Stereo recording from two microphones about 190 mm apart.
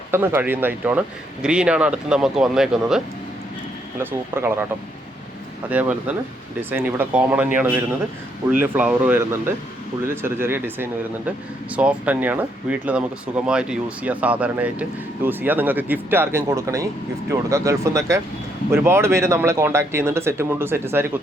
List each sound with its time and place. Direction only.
0.1 s speech: 10° right (ahead or behind)
4.0 s speech: 10° right (ahead or behind)
5.6 s speech: 10° right (ahead or behind)